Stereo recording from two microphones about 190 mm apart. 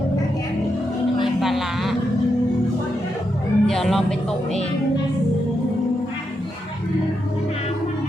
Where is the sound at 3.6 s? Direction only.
Centre (ahead or behind).